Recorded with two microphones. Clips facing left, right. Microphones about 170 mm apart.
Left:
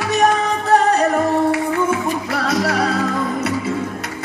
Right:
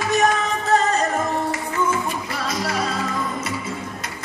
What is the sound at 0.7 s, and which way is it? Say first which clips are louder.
Music: left 5 dB; 65° left (ahead or behind).